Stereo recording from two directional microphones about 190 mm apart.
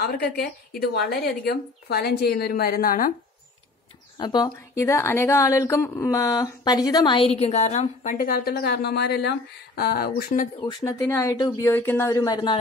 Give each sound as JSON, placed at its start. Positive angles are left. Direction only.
{"t": 0.0, "sound": "speech", "side_deg": 55}
{"t": 4.2, "sound": "speech", "side_deg": 20}
{"t": 10.6, "sound": "speech", "side_deg": 20}